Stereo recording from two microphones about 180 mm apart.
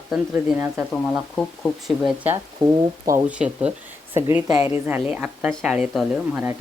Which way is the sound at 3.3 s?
5° right (ahead or behind).